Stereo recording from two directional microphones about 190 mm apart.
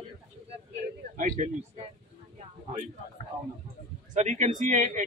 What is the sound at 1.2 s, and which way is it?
Speech, 40° right (ahead or behind).